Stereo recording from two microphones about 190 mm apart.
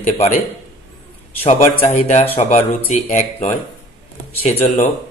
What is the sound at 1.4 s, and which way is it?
Speech, 40° left (ahead or behind).